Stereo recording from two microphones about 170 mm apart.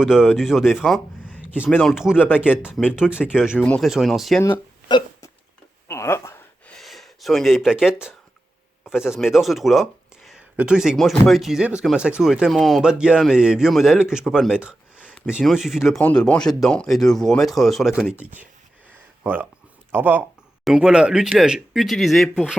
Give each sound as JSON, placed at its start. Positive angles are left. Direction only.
{"t": 0.0, "sound": "speech", "side_deg": -5}
{"t": 1.6, "sound": "speech", "side_deg": 5}
{"t": 4.9, "sound": "hiccup", "side_deg": 25}
{"t": 5.9, "sound": "a sound", "side_deg": 15}
{"t": 6.7, "sound": "speech", "side_deg": 0}
{"t": 18.2, "sound": "speech", "side_deg": -10}
{"t": 18.9, "sound": "a sound", "side_deg": -10}
{"t": 19.9, "sound": "speech", "side_deg": -10}